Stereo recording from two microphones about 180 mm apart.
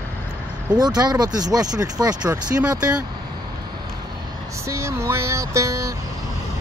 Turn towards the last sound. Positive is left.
turn(degrees=-20)  # may be behind; listen again after turning